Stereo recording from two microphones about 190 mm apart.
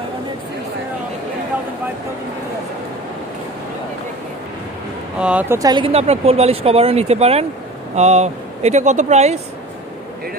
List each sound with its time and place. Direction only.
5.2 s speech: 10° right (ahead or behind); by 9.4 s 35° right (ahead or behind)